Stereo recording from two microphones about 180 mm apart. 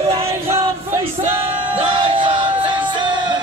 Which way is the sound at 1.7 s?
30° right (ahead or behind).